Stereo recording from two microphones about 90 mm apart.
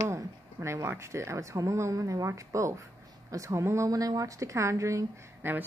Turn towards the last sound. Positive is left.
turn(degrees=-35)  # may be behind; listen again after turning